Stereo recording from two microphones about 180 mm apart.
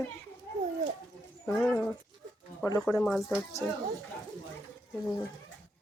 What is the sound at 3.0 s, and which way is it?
Speech, centre (ahead or behind).